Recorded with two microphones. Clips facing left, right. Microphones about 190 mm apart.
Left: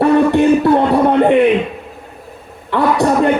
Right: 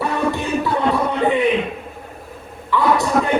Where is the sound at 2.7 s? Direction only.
60° left (ahead or behind).